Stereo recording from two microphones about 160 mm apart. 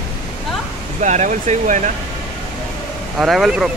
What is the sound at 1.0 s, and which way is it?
Speech, 50° right (ahead or behind).